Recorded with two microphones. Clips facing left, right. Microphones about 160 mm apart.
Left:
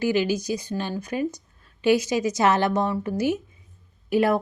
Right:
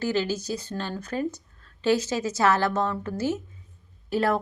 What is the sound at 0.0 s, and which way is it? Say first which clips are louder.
Speech: left 4 dB; 15° left (ahead or behind).